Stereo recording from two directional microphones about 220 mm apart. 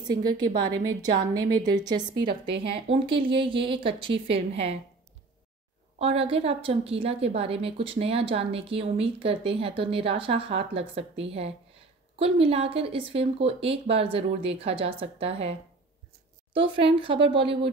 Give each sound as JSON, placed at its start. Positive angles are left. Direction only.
{"t": 0.1, "sound": "a woman's voice", "side_deg": -20}
{"t": 5.9, "sound": "a woman's voice", "side_deg": -25}
{"t": 16.5, "sound": "a woman's voice", "side_deg": -25}